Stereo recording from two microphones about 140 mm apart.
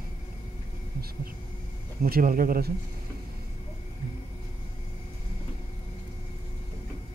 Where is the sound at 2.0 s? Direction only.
90° right.